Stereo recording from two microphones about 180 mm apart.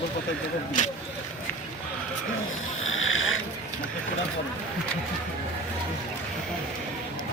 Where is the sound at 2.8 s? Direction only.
90° left.